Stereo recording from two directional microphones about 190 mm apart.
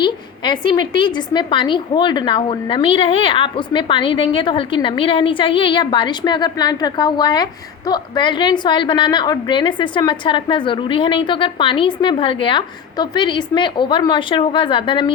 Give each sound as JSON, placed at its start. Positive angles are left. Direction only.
{"t": 0.0, "sound": "a woman's voice", "side_deg": 25}